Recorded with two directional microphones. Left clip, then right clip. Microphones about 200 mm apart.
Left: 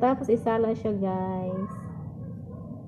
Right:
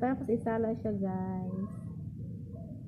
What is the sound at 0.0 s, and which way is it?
A woman's voice, centre (ahead or behind).